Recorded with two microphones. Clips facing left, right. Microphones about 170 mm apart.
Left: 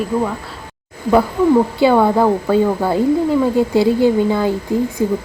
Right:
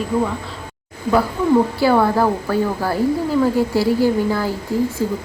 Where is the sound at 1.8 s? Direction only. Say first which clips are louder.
Left 3 dB; 20° left (ahead or behind).